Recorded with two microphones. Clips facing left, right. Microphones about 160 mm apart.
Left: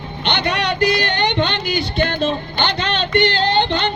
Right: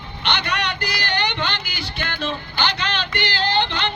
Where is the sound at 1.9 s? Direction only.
20° left (ahead or behind).